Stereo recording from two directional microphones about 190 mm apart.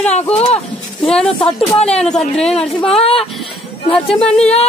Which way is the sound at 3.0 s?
30° left (ahead or behind).